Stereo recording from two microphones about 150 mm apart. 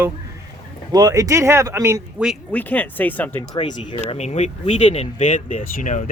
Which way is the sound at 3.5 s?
35° left (ahead or behind).